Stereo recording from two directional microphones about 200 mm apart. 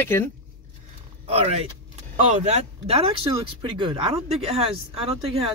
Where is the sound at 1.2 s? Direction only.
30° right (ahead or behind).